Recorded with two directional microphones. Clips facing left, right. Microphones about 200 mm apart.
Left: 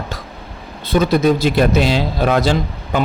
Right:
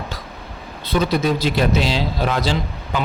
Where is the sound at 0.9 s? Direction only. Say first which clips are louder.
Left 5 dB; 50° left (ahead or behind).